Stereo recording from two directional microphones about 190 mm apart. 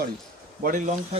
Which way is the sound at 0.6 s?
40° right (ahead or behind).